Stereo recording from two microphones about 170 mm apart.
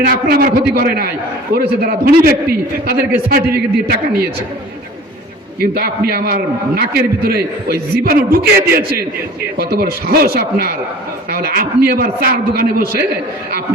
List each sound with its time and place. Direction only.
0.0 s a man's voice: 60° right (ahead or behind)
5.5 s a man's voice: 65° right (ahead or behind)